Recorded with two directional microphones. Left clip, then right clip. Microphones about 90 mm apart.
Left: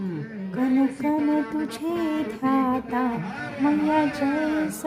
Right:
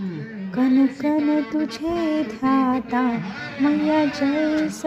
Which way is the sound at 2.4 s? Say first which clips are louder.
Right 2 dB; 25° right (ahead or behind).